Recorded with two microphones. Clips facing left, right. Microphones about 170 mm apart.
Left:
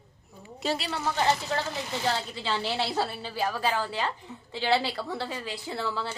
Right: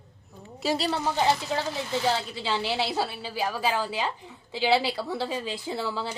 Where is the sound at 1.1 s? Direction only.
10° right (ahead or behind).